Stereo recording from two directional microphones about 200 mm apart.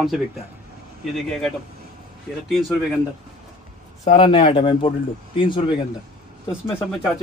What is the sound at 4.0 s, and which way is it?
Speech, 25° left (ahead or behind).